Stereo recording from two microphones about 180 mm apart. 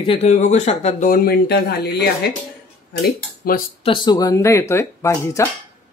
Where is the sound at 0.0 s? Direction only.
35° left (ahead or behind); by 2.0 s 65° left (ahead or behind).